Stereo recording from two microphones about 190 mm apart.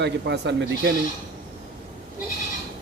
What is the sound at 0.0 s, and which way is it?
Speech, 65° right (ahead or behind).